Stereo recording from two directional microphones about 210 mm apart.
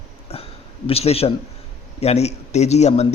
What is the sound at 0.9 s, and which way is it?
A man's voice, 30° left (ahead or behind).